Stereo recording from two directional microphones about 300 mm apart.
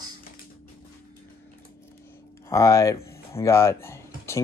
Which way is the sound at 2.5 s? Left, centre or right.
Centre.